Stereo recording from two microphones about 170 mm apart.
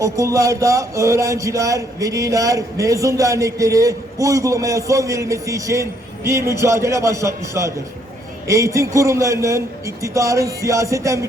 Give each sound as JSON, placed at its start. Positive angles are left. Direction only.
{"t": 0.0, "sound": "speech", "side_deg": -20}